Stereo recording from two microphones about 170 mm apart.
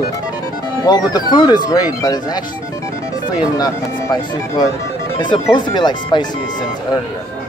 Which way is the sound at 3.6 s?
20° left (ahead or behind).